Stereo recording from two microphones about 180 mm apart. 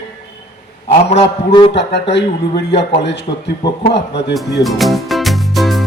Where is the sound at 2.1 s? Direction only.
70° left (ahead or behind).